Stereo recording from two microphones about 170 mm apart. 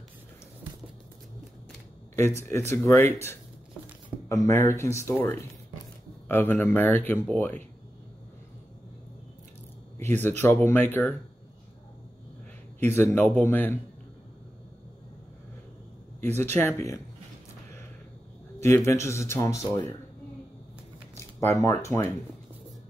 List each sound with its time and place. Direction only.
2.1 s a man's voice: 15° left (ahead or behind)
4.3 s a man's voice: 15° left (ahead or behind)
9.9 s a man's voice: 15° left (ahead or behind)
12.8 s a man's voice: 15° left (ahead or behind)
16.5 s a man's voice: 15° left (ahead or behind)
18.6 s a man's voice: 15° left (ahead or behind)
21.4 s a man's voice: 15° left (ahead or behind)